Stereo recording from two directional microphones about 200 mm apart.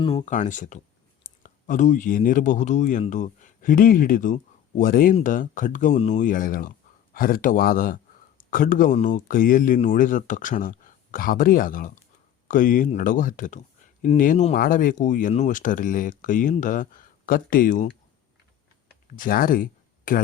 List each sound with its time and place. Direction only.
0.0 s speech: 25° left (ahead or behind)
0.3 s speech: 40° left (ahead or behind)
19.1 s speech: 45° left (ahead or behind)